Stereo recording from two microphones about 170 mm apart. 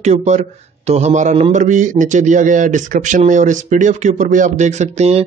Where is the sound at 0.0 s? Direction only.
40° right (ahead or behind).